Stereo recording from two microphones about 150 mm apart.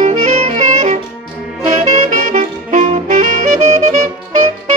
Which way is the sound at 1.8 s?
50° right (ahead or behind).